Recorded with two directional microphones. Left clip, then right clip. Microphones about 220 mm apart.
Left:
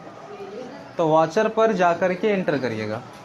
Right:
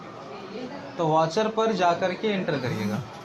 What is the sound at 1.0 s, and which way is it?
Speech, 40° left (ahead or behind).